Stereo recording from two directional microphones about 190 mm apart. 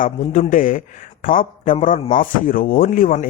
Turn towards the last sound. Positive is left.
turn(degrees=45)  # may be behind; listen again after turning